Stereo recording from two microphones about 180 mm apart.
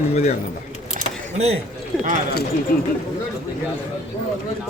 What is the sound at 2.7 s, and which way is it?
Speech, 55° left (ahead or behind).